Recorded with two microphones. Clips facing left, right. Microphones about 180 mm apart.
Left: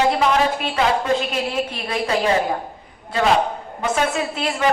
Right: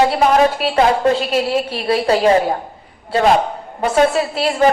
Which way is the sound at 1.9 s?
35° right (ahead or behind).